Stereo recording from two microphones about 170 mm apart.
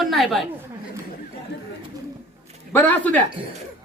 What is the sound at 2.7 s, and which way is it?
Speech, 10° left (ahead or behind).